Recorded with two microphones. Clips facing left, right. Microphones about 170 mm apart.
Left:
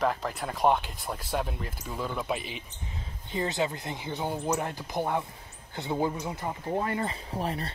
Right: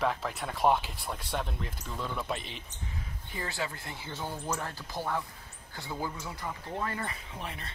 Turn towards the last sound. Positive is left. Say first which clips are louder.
# left 9 dB
turn(degrees=35)  # may be behind; listen again after turning